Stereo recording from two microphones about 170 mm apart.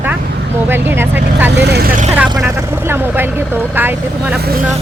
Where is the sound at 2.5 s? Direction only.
15° right (ahead or behind).